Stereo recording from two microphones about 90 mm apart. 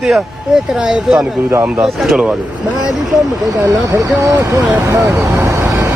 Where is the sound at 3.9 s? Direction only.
40° right (ahead or behind).